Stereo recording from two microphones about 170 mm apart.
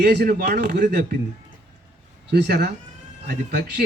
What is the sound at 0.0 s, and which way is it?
Speech, 70° right (ahead or behind).